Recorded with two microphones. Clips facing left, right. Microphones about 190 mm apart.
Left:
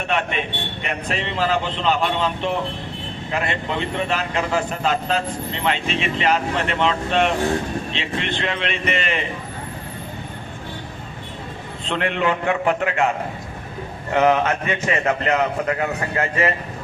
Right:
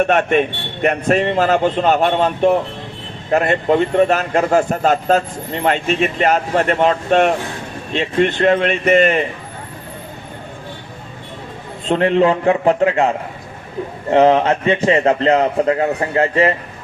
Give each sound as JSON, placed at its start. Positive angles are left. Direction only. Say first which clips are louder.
{"t": 0.0, "sound": "a man's voice", "louder": "right 9 dB", "side_deg": -50}
{"t": 11.9, "sound": "a man's voice", "louder": "right 8 dB", "side_deg": -35}
{"t": 14.1, "sound": "a man's voice", "louder": "right 5 dB", "side_deg": -30}